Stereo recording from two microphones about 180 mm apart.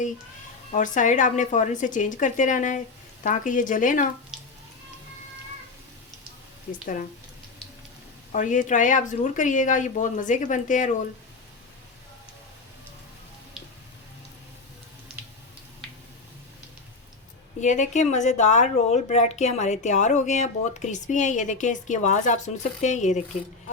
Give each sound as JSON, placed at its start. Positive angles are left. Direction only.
{"t": 0.7, "sound": "speech", "side_deg": 45}
{"t": 6.7, "sound": "speech", "side_deg": 45}
{"t": 8.3, "sound": "speech", "side_deg": 45}
{"t": 17.6, "sound": "speech", "side_deg": 40}